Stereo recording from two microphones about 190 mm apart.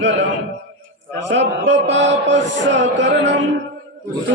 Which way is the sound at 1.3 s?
70° right (ahead or behind).